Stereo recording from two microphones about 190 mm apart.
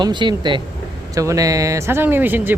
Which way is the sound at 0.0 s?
25° right (ahead or behind).